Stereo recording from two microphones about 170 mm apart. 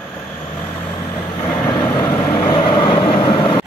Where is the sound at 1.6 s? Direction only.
25° left (ahead or behind).